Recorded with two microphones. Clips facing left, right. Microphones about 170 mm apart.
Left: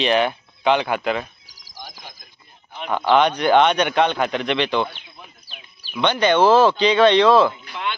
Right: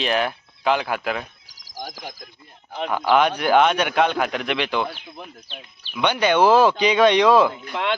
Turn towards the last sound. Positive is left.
turn(degrees=-90)